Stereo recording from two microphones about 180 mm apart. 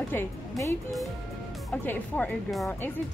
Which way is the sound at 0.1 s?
15° left (ahead or behind).